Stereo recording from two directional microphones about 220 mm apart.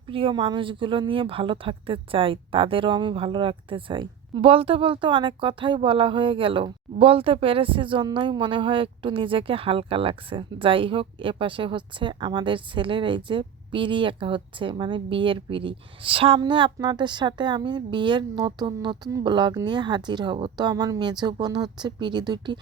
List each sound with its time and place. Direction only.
0.1 s a woman's voice: 25° right (ahead or behind)